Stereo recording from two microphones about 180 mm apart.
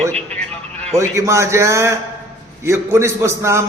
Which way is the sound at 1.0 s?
15° right (ahead or behind).